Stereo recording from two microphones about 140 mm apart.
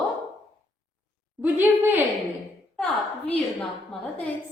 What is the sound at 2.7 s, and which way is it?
A woman's voice, 10° left (ahead or behind).